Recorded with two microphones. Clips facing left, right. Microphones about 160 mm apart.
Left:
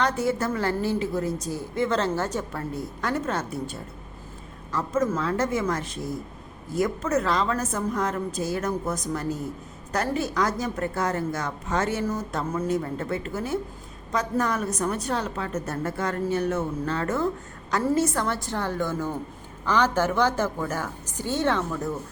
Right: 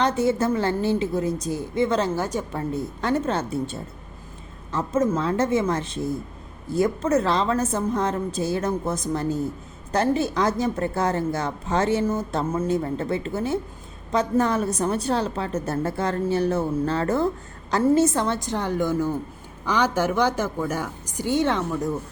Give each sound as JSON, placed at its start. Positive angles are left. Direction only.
{"t": 0.0, "sound": "a woman's voice", "side_deg": -25}